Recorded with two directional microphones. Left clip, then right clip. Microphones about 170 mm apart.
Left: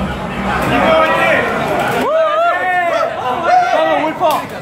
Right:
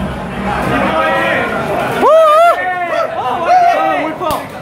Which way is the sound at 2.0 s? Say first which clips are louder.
Right 9 dB; 35° right (ahead or behind).